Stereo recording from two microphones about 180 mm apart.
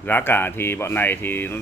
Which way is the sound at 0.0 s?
10° left (ahead or behind).